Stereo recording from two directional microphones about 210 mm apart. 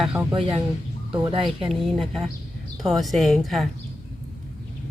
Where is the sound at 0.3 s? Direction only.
25° right (ahead or behind).